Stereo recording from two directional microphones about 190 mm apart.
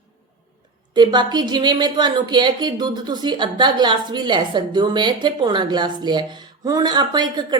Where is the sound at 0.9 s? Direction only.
25° right (ahead or behind).